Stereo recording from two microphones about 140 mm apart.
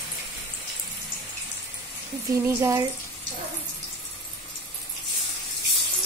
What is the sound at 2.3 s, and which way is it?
Frying, 20° right (ahead or behind).